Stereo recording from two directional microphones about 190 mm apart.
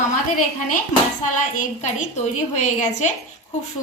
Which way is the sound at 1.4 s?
40° left (ahead or behind).